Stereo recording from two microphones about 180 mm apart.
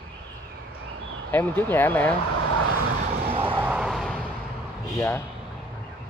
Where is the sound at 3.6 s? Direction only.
5° right (ahead or behind).